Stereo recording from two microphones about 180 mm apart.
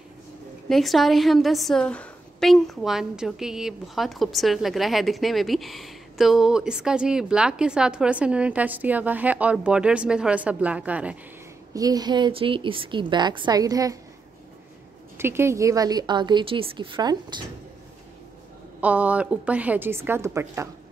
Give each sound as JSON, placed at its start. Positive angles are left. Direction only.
{"t": 0.7, "sound": "a woman's voice", "side_deg": 0}
{"t": 11.7, "sound": "a woman's voice", "side_deg": -20}
{"t": 15.1, "sound": "a woman's voice", "side_deg": -15}
{"t": 18.8, "sound": "a woman's voice", "side_deg": -10}